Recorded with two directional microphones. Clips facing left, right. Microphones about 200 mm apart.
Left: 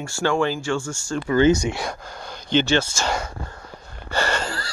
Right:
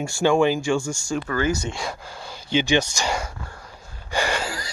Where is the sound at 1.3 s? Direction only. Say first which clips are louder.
Left 8 dB; 25° left (ahead or behind).